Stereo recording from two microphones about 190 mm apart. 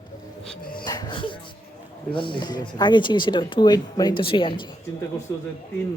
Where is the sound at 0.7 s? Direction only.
20° left (ahead or behind).